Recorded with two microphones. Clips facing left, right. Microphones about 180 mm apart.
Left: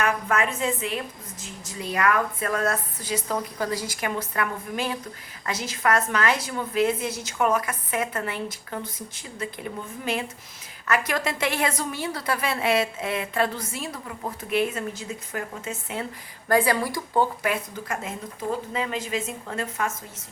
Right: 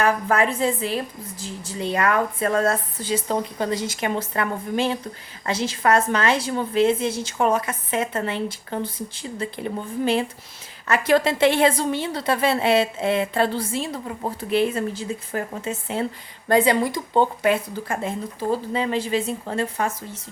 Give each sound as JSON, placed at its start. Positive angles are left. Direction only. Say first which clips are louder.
{"t": 0.0, "sound": "a woman's voice", "louder": "right 4 dB", "side_deg": -35}